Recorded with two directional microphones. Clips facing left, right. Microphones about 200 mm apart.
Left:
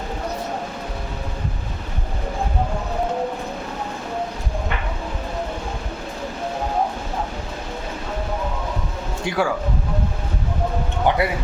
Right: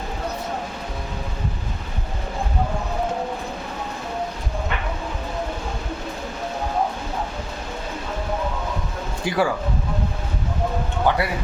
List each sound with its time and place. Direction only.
9.2 s speech: centre (ahead or behind)
11.1 s speech: 20° left (ahead or behind)